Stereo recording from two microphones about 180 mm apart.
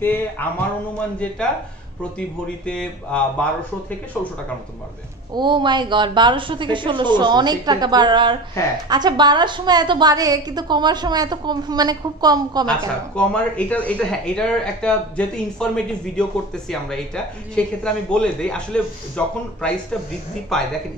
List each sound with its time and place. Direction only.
0.0 s speech: 10° left (ahead or behind)
5.3 s a woman's voice: 25° right (ahead or behind)
12.6 s speech: 5° left (ahead or behind)